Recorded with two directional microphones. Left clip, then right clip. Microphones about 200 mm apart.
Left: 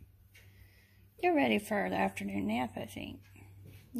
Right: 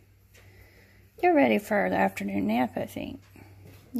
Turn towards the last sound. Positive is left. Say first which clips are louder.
# right 8 dB
turn(degrees=-25)  # may be behind; listen again after turning